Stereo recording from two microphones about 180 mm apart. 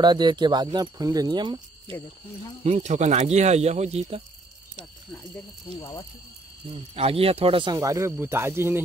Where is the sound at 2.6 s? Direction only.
40° right (ahead or behind).